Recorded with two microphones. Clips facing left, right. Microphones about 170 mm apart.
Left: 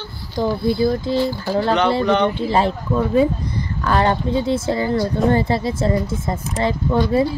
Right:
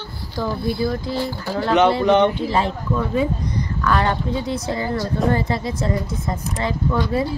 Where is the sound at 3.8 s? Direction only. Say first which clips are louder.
Left 3 dB; 30° left (ahead or behind).